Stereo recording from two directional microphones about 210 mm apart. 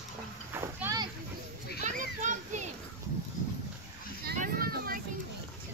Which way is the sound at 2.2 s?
35° right (ahead or behind).